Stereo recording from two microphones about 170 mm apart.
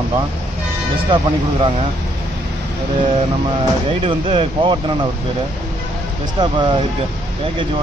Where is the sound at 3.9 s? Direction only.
30° right (ahead or behind).